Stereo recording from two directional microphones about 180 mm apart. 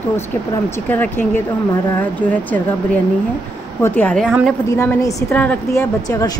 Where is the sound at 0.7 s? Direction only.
10° left (ahead or behind).